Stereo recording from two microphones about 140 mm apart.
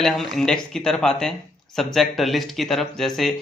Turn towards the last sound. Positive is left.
turn(degrees=0)  # may be behind; listen again after turning